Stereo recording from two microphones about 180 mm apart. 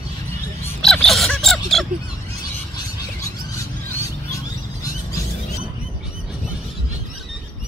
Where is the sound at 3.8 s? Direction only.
15° left (ahead or behind).